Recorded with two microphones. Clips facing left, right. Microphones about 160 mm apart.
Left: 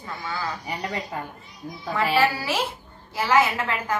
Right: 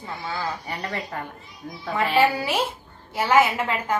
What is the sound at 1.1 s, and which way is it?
Speech, 10° left (ahead or behind).